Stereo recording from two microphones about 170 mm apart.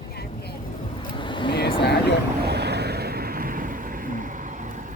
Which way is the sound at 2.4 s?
75° right (ahead or behind).